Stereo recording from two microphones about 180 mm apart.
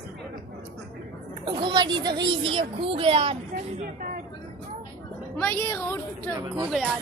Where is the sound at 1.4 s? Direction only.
25° right (ahead or behind).